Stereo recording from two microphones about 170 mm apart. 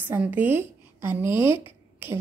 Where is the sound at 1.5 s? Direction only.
30° left (ahead or behind).